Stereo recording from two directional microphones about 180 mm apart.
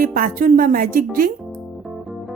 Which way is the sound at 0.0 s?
50° right (ahead or behind).